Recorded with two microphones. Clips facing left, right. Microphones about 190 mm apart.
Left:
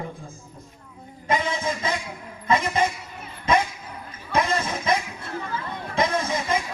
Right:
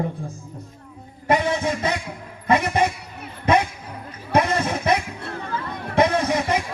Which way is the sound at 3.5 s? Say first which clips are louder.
Right 3 dB; 65° right (ahead or behind).